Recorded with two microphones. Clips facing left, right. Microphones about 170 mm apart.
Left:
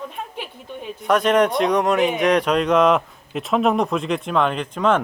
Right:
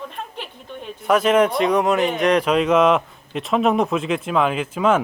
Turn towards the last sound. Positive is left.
turn(degrees=-5)  # may be behind; listen again after turning